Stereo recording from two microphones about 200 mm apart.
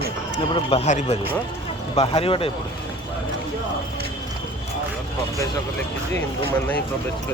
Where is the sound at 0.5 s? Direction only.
30° left (ahead or behind).